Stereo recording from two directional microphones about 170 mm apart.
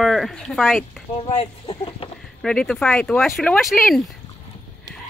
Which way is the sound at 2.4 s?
5° left (ahead or behind).